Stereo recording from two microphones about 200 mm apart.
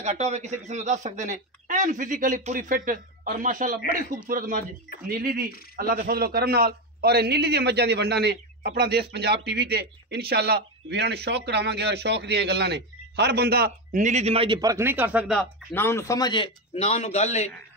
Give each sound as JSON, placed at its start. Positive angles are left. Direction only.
{"t": 0.0, "sound": "a man's voice", "side_deg": -35}
{"t": 13.9, "sound": "a man's voice", "side_deg": -35}
{"t": 15.7, "sound": "a man's voice", "side_deg": 10}